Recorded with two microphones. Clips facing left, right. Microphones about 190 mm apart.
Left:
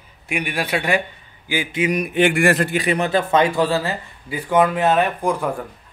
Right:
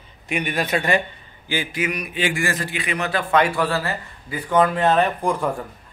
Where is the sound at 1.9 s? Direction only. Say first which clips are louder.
Left 7 dB; 60° left (ahead or behind).